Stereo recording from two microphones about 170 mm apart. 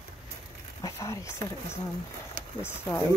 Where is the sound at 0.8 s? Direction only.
20° left (ahead or behind).